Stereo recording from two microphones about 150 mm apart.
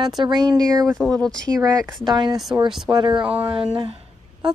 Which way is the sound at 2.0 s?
30° right (ahead or behind).